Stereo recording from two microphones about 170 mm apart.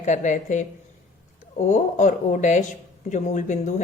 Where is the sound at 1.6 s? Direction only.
45° left (ahead or behind).